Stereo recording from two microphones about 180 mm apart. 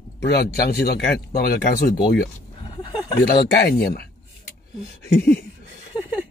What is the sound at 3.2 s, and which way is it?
Speech, 55° left (ahead or behind).